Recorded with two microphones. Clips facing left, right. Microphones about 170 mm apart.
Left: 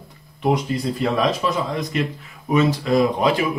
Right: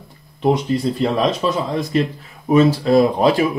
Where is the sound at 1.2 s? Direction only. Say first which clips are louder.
Right 2 dB; 30° right (ahead or behind).